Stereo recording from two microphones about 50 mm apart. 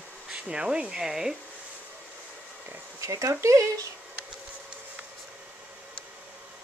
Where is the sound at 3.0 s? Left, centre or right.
Right.